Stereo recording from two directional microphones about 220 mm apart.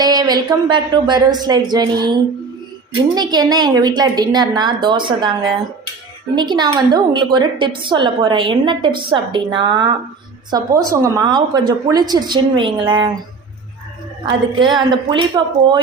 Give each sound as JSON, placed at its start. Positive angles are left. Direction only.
{"t": 0.0, "sound": "a woman's voice", "side_deg": -20}
{"t": 6.3, "sound": "a woman's voice", "side_deg": -20}
{"t": 14.3, "sound": "a woman's voice", "side_deg": -20}